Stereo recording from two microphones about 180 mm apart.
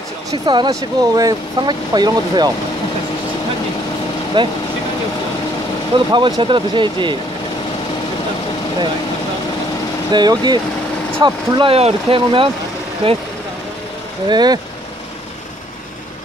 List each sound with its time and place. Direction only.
0.3 s speech: 20° right (ahead or behind)
4.4 s speech: 25° right (ahead or behind)
5.9 s speech: 25° right (ahead or behind)
10.1 s speech: 25° right (ahead or behind)
14.3 s speech: 25° right (ahead or behind)